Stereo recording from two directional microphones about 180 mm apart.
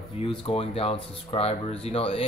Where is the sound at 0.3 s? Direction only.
30° left (ahead or behind).